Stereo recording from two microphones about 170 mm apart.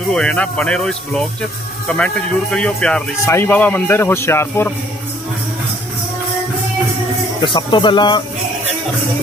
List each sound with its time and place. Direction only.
0.1 s speech: 5° left (ahead or behind)
7.4 s speech: 30° left (ahead or behind)